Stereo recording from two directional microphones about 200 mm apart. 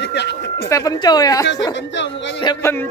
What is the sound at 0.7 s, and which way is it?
Speech, 15° left (ahead or behind).